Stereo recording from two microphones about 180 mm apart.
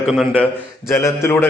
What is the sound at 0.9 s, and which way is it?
Speech, 15° left (ahead or behind).